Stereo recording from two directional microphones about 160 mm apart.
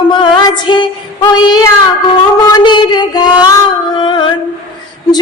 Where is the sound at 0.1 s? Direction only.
30° left (ahead or behind).